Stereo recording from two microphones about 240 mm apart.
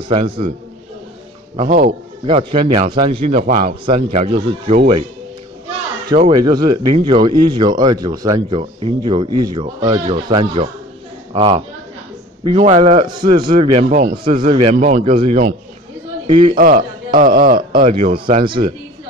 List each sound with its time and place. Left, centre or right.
0.1 s a man's voice: right
1.7 s a man's voice: right
2.2 s a man's voice: right
6.0 s a man's voice: right
16.5 s a man's voice: right
17.9 s a man's voice: right